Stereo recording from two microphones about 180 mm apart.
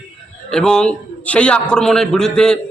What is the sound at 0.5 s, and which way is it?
A man's voice, 5° left (ahead or behind).